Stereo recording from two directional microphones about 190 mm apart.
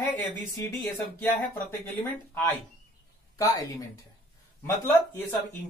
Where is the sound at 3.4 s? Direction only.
20° left (ahead or behind).